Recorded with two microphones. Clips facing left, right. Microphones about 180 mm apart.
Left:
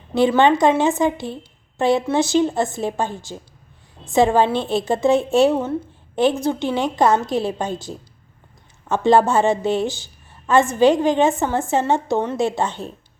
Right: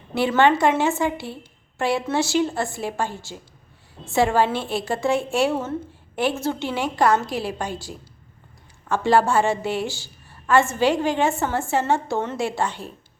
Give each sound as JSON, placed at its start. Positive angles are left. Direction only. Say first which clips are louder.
{"t": 0.1, "sound": "a woman's voice", "louder": "left 3 dB", "side_deg": 15}